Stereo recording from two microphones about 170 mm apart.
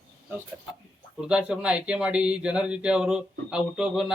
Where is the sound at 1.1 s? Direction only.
5° right (ahead or behind).